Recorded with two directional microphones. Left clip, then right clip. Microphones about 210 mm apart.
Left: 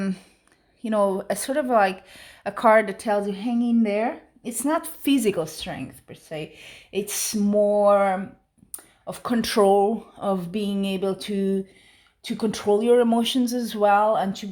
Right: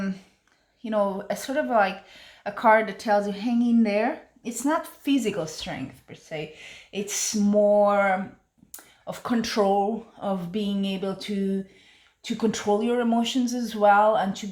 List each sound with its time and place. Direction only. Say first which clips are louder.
0.0 s speech: left 3 dB; 45° left (ahead or behind)